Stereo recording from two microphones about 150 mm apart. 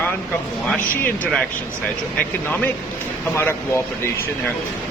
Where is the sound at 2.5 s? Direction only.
10° left (ahead or behind).